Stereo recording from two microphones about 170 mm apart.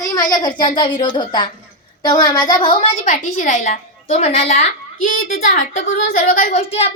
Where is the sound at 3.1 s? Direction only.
45° left (ahead or behind).